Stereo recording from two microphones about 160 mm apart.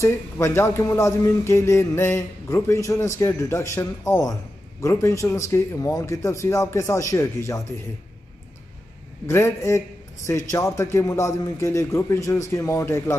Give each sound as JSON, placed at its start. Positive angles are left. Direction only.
{"t": 0.0, "sound": "a man's voice", "side_deg": 15}
{"t": 9.3, "sound": "a man's voice", "side_deg": 20}